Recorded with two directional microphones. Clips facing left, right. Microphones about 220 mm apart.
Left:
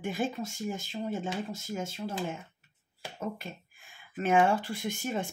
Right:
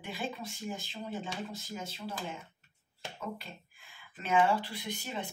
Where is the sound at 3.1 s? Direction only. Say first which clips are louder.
Left 5 dB; 45° left (ahead or behind).